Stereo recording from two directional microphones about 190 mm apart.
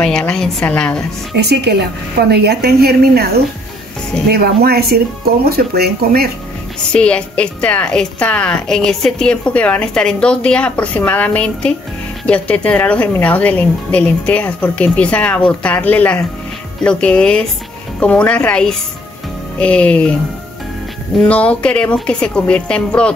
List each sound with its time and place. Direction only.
0.0 s a woman's voice: 5° left (ahead or behind)
1.4 s speech: 60° right (ahead or behind)
4.3 s speech: 55° right (ahead or behind)
6.9 s a woman's voice: 5° left (ahead or behind)
21.2 s a woman's voice: 5° left (ahead or behind)